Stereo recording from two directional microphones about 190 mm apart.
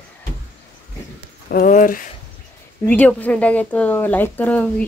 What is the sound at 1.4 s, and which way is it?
Speech, 45° left (ahead or behind).